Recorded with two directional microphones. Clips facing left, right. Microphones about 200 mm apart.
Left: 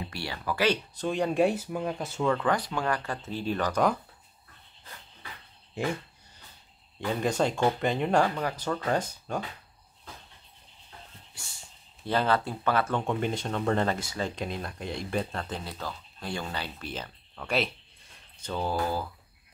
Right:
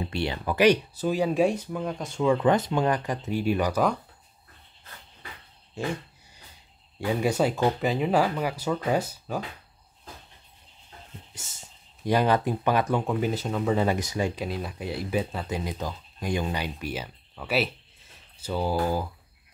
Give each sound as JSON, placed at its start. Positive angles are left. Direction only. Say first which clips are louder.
{"t": 0.1, "sound": "speech", "louder": "right 5 dB", "side_deg": -20}
{"t": 0.9, "sound": "speech", "louder": "right 2 dB", "side_deg": -5}
{"t": 2.2, "sound": "speech", "louder": "right 5 dB", "side_deg": -20}
{"t": 5.8, "sound": "speech", "louder": "even", "side_deg": 15}
{"t": 7.1, "sound": "speech", "louder": "right 3 dB", "side_deg": -10}
{"t": 12.0, "sound": "speech", "louder": "right 4 dB", "side_deg": -15}
{"t": 13.0, "sound": "speech", "louder": "right 2 dB", "side_deg": -5}
{"t": 13.9, "sound": "speech", "louder": "right 5 dB", "side_deg": -15}